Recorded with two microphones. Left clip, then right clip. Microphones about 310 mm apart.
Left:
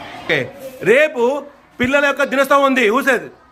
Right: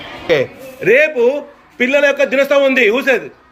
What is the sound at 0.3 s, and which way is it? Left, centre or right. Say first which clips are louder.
A woman's voice: right 4 dB; centre.